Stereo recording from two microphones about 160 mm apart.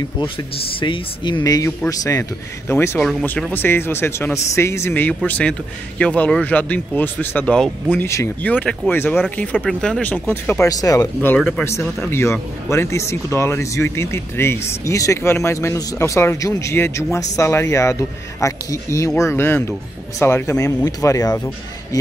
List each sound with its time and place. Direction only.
0.7 s a man's voice: 30° left (ahead or behind); by 3.0 s 15° left (ahead or behind)
3.0 s speech: centre (ahead or behind)
10.7 s a man's voice: 20° left (ahead or behind)
11.1 s a man's voice: 10° left (ahead or behind)